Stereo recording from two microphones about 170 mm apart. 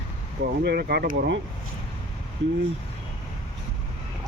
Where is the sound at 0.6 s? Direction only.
70° right (ahead or behind).